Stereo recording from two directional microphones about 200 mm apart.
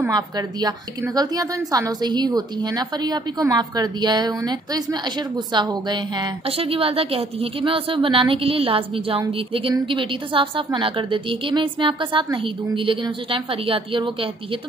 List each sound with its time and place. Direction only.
0.1 s a woman's voice: 20° right (ahead or behind)